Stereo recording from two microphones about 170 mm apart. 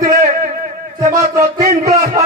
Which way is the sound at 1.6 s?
40° right (ahead or behind).